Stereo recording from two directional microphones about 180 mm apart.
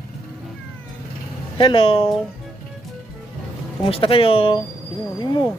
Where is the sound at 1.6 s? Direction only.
30° left (ahead or behind).